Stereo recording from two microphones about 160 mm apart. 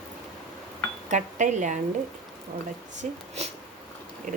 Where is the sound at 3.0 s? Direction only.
45° right (ahead or behind).